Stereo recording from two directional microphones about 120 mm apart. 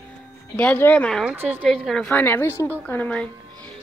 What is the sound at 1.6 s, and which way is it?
Speech, 5° left (ahead or behind).